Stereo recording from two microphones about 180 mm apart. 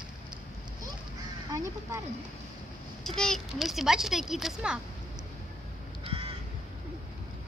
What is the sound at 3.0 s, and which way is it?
Speech, centre (ahead or behind).